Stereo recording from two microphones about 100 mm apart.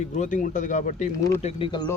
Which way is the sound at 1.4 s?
90° left.